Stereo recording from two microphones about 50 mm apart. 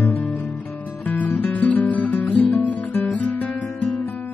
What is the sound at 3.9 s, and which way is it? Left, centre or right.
Music, left.